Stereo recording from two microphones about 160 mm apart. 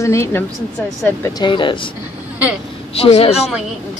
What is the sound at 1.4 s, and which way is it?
Speech, 30° left (ahead or behind).